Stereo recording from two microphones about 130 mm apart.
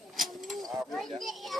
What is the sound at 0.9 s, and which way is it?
Speech, centre (ahead or behind).